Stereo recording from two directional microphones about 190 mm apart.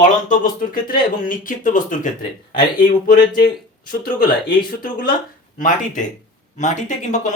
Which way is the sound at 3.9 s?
50° left (ahead or behind).